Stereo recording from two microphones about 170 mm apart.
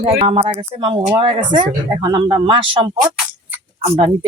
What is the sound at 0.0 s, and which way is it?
Speech, 30° right (ahead or behind).